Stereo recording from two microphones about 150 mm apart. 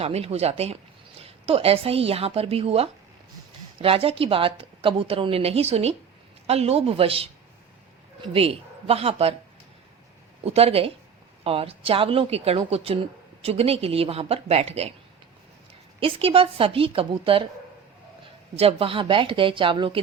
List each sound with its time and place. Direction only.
0.0 s a woman's voice: 45° right (ahead or behind)
10.4 s a woman's voice: 45° right (ahead or behind)
16.0 s a woman's voice: 35° right (ahead or behind)
18.5 s a woman's voice: 40° right (ahead or behind)